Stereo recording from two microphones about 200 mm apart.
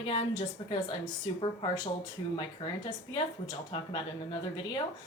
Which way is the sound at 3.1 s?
25° left (ahead or behind).